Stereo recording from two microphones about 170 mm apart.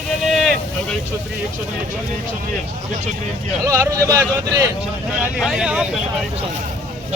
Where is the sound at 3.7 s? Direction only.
20° right (ahead or behind).